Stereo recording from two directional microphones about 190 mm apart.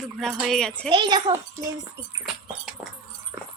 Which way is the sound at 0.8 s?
25° right (ahead or behind).